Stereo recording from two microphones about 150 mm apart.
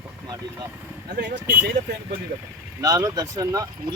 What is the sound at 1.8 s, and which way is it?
Speech, 50° right (ahead or behind).